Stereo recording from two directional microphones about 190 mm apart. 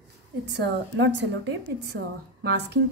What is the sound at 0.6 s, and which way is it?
A woman's voice, 70° right (ahead or behind).